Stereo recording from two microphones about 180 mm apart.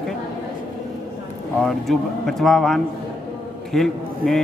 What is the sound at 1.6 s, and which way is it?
A man's voice, centre (ahead or behind).